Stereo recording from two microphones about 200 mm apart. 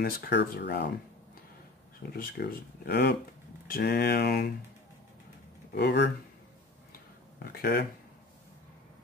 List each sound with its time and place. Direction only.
0.0 s speech: 55° left (ahead or behind)
2.0 s speech: 50° left (ahead or behind)
5.8 s speech: 55° left (ahead or behind)
7.3 s speech: 50° left (ahead or behind)